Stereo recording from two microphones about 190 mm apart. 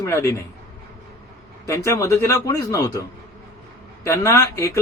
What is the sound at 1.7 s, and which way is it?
A man's voice, 15° left (ahead or behind).